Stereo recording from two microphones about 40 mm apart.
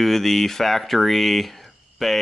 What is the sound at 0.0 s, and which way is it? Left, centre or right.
Speech, centre.